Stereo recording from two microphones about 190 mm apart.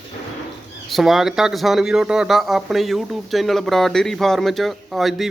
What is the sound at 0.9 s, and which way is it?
Speech, centre (ahead or behind).